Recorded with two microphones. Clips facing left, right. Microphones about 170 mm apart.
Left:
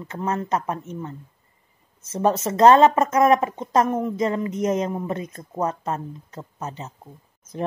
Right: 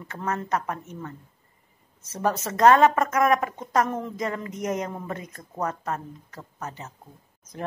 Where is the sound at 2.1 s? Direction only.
25° left (ahead or behind).